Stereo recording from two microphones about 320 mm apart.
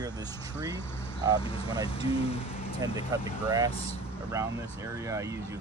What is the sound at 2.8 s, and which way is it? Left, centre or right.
Speech, centre.